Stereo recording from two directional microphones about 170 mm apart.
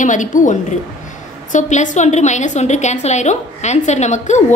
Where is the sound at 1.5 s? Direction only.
45° left (ahead or behind).